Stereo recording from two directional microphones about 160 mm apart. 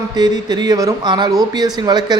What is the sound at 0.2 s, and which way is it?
Speech, 25° right (ahead or behind).